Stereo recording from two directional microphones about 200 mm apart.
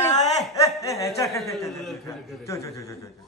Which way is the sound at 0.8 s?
15° left (ahead or behind).